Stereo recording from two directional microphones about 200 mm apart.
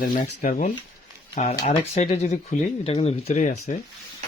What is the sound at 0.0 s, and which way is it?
Speech, 40° left (ahead or behind).